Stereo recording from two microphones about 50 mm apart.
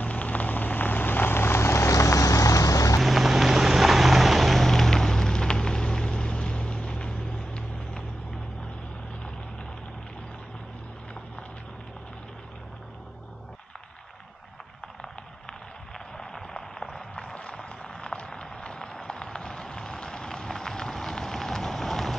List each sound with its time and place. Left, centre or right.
0.0 s vehicle: left
3.0 s vehicle: centre
15.9 s a sound: centre